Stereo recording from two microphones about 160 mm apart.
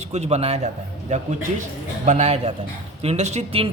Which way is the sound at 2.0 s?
45° right (ahead or behind).